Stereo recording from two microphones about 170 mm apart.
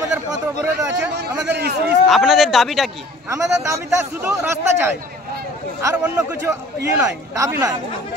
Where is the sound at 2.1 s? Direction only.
Centre (ahead or behind).